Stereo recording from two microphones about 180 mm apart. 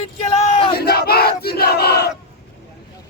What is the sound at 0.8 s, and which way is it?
Battle cry, 60° left (ahead or behind).